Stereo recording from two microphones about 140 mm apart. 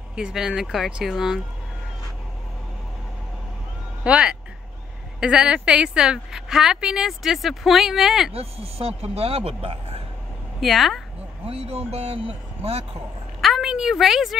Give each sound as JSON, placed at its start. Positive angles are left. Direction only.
{"t": 0.1, "sound": "a woman's voice", "side_deg": -5}
{"t": 4.0, "sound": "a woman's voice", "side_deg": -10}
{"t": 8.3, "sound": "speech", "side_deg": -45}
{"t": 10.6, "sound": "a woman's voice", "side_deg": 0}
{"t": 11.4, "sound": "speech", "side_deg": -45}
{"t": 13.4, "sound": "a woman's voice", "side_deg": 0}